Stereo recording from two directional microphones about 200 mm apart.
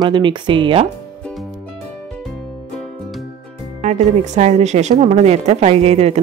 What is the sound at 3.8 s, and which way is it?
A woman's voice, 35° right (ahead or behind).